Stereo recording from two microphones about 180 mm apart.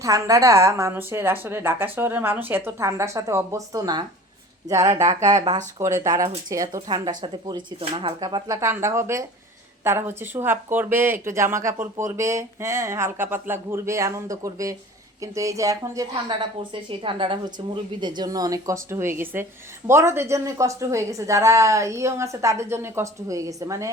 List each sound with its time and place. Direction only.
0.0 s speech: 20° right (ahead or behind)
5.8 s speech: 15° right (ahead or behind)
17.0 s speech: 30° right (ahead or behind)